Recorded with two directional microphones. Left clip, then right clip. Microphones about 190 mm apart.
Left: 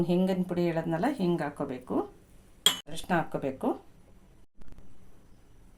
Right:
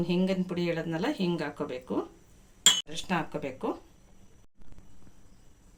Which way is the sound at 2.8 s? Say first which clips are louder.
Left 2 dB; 40° left (ahead or behind).